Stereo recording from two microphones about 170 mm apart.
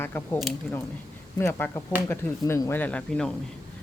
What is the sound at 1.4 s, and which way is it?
Speech, 15° left (ahead or behind).